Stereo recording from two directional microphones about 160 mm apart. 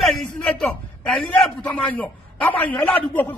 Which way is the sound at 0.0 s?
Centre (ahead or behind).